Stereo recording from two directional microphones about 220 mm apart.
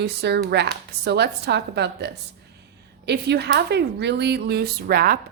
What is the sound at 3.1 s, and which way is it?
A woman's voice, 50° right (ahead or behind).